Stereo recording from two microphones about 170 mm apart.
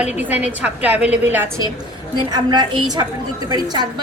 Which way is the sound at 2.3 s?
25° right (ahead or behind).